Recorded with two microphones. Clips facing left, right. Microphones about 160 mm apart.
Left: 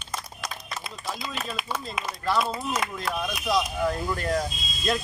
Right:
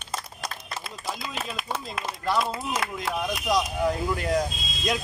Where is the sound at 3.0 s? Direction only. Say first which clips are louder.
Right 3 dB; 15° right (ahead or behind).